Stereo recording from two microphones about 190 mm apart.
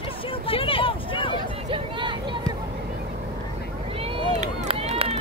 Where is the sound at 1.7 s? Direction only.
25° right (ahead or behind).